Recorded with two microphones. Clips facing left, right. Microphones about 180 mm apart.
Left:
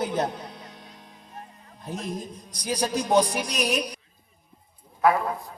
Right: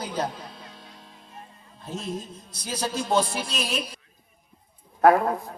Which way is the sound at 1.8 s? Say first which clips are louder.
Even; 15° left (ahead or behind).